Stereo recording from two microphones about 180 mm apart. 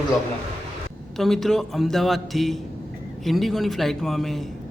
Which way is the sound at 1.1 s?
Centre (ahead or behind).